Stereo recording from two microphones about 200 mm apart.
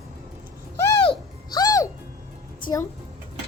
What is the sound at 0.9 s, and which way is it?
Music, 25° left (ahead or behind).